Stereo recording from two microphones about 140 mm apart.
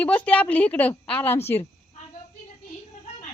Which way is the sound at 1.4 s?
45° left (ahead or behind).